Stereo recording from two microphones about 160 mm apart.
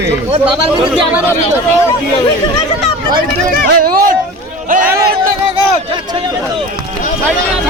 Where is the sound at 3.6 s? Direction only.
65° right (ahead or behind).